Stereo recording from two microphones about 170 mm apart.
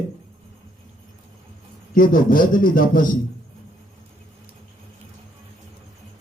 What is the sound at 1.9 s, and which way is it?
A man's voice, 55° left (ahead or behind).